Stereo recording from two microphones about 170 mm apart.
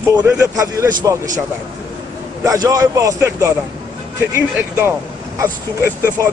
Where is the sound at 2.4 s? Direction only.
20° right (ahead or behind).